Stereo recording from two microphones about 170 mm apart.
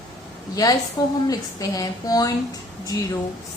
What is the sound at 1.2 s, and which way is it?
A woman's voice, 20° left (ahead or behind).